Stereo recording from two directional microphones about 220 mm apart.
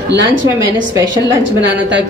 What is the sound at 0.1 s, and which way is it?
Speech, 50° right (ahead or behind).